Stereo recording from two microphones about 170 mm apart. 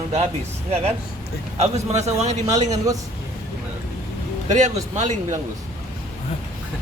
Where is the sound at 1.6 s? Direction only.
40° right (ahead or behind).